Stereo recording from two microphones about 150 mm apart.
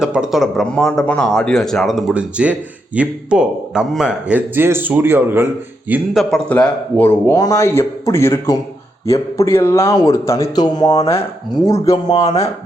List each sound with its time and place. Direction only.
0.0 s speech: 5° right (ahead or behind)
5.9 s speech: centre (ahead or behind)
6.5 s a man's voice: 10° left (ahead or behind)
7.3 s a man's voice: 20° left (ahead or behind)
12.2 s speech: 45° left (ahead or behind)